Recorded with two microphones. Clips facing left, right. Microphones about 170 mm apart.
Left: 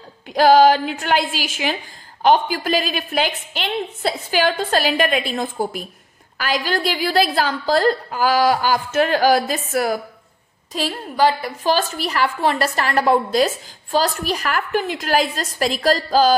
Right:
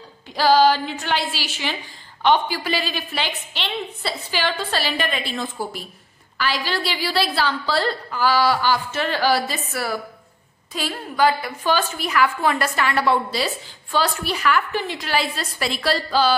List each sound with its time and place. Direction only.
0.3 s a woman's voice: 50° left (ahead or behind)